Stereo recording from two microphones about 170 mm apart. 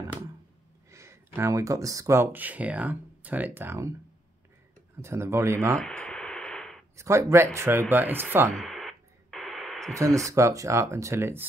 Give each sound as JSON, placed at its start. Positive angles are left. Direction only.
{"t": 0.8, "sound": "speech", "side_deg": -15}
{"t": 5.0, "sound": "speech", "side_deg": -15}
{"t": 5.8, "sound": "a sound", "side_deg": 5}
{"t": 7.0, "sound": "speech", "side_deg": -15}
{"t": 8.5, "sound": "radio", "side_deg": 0}
{"t": 9.9, "sound": "speech", "side_deg": -20}